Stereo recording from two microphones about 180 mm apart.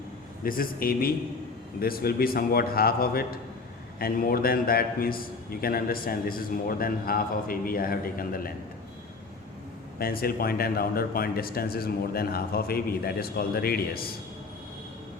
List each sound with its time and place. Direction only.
0.4 s speech: 50° left (ahead or behind)
10.0 s speech: 55° left (ahead or behind)